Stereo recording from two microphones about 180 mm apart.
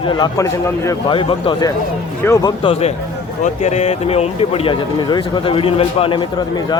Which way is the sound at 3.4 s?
40° left (ahead or behind).